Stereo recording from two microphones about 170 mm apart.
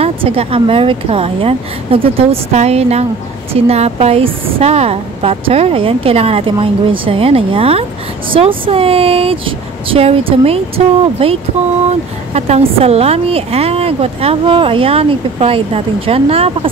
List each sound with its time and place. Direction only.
0.0 s a woman's voice: 35° right (ahead or behind)